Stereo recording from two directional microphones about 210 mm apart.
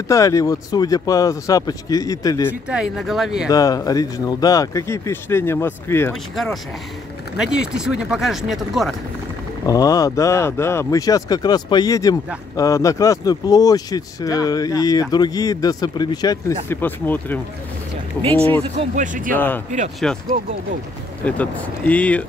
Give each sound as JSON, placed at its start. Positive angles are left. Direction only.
{"t": 0.1, "sound": "speech", "side_deg": 15}
{"t": 2.7, "sound": "speech", "side_deg": 0}
{"t": 3.4, "sound": "speech", "side_deg": 15}
{"t": 6.3, "sound": "speech", "side_deg": 0}
{"t": 9.7, "sound": "speech", "side_deg": 15}
{"t": 18.6, "sound": "speech", "side_deg": -30}
{"t": 19.3, "sound": "speech", "side_deg": 10}
{"t": 21.3, "sound": "speech", "side_deg": 5}